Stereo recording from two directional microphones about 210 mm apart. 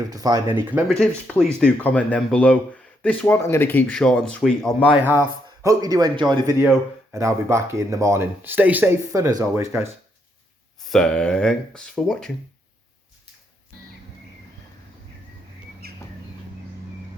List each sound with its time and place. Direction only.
0.1 s speech: 15° right (ahead or behind)
0.9 s speech: 5° left (ahead or behind)
5.0 s speech: 10° right (ahead or behind)
10.8 s speech: centre (ahead or behind)
15.8 s bird: 45° right (ahead or behind)